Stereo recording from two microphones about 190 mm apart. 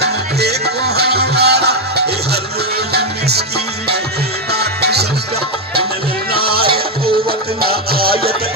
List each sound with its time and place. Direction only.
0.0 s music: 60° right (ahead or behind)
4.5 s music: 60° right (ahead or behind)
6.3 s music: 55° right (ahead or behind)